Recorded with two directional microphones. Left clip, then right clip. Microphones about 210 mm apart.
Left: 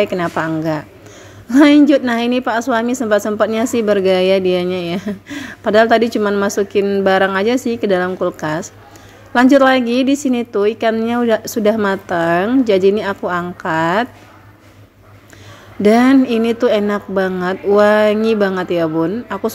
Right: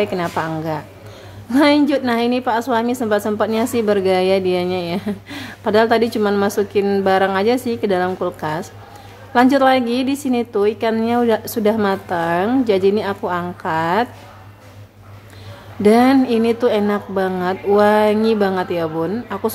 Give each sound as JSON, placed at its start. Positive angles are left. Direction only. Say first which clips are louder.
{"t": 0.0, "sound": "speech", "louder": "left 3 dB", "side_deg": 15}
{"t": 15.8, "sound": "speech", "louder": "left 2 dB", "side_deg": 15}